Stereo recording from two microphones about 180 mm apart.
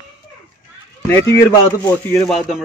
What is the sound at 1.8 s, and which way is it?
Speech, 15° left (ahead or behind).